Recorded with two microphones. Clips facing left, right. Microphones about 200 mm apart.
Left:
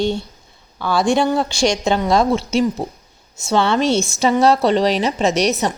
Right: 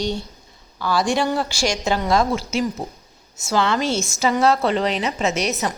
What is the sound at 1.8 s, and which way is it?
Speech, 25° left (ahead or behind).